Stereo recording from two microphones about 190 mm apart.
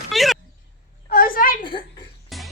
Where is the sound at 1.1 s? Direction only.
45° left (ahead or behind).